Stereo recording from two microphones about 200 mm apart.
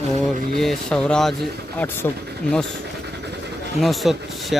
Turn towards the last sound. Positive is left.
turn(degrees=0)  # may be behind; listen again after turning